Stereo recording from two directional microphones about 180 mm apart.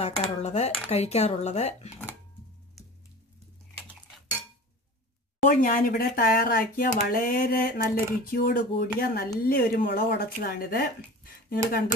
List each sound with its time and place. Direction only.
0.0 s speech: 35° left (ahead or behind)
5.4 s speech: 50° left (ahead or behind)
7.1 s a sound: 55° left (ahead or behind)
11.4 s speech: 55° left (ahead or behind)